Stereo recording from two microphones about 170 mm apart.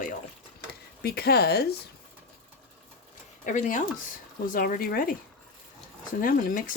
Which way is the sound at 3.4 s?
50° left (ahead or behind).